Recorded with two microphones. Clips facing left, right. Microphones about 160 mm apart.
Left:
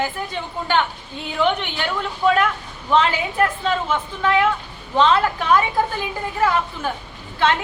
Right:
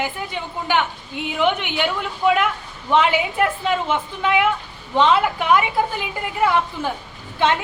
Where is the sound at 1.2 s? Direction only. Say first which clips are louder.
Even; 15° right (ahead or behind).